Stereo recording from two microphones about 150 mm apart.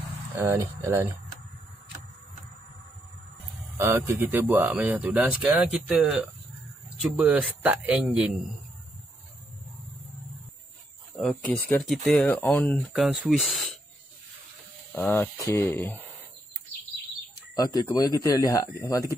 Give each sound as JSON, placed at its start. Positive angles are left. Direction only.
{"t": 0.4, "sound": "speech", "side_deg": -15}
{"t": 3.7, "sound": "speech", "side_deg": -20}
{"t": 11.5, "sound": "speech", "side_deg": 10}
{"t": 12.9, "sound": "speech", "side_deg": -5}
{"t": 14.9, "sound": "speech", "side_deg": 10}
{"t": 17.6, "sound": "speech", "side_deg": 25}